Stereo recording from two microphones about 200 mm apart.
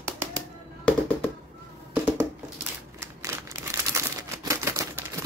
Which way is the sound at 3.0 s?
15° right (ahead or behind).